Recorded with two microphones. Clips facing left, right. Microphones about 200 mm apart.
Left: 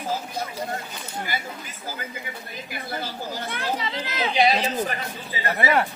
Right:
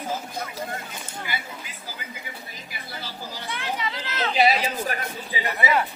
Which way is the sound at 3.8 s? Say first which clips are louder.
Left 1 dB; 25° left (ahead or behind).